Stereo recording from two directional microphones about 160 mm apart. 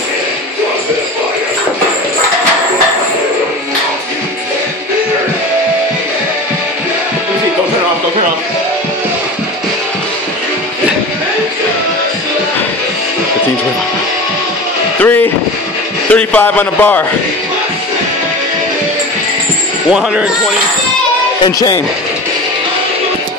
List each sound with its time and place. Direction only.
15.0 s vehicle: 10° left (ahead or behind)
16.1 s a man's voice: 10° left (ahead or behind)
19.9 s speech: 5° right (ahead or behind)
21.5 s speech: 20° left (ahead or behind)